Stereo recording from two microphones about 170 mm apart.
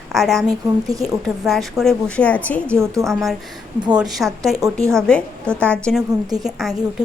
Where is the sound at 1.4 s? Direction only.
Centre (ahead or behind).